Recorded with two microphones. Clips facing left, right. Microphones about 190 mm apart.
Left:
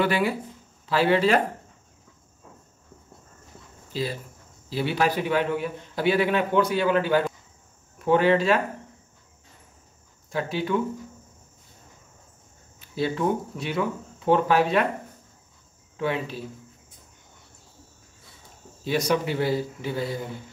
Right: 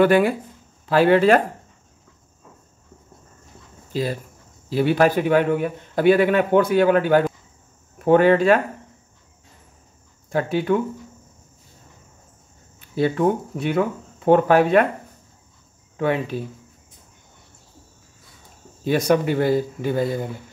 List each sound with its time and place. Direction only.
0.0 s a man's voice: 50° right (ahead or behind)
3.9 s a man's voice: 50° right (ahead or behind)
10.3 s a man's voice: 50° right (ahead or behind)
12.9 s a man's voice: 55° right (ahead or behind)
16.0 s a man's voice: 50° right (ahead or behind)
18.9 s a man's voice: 55° right (ahead or behind)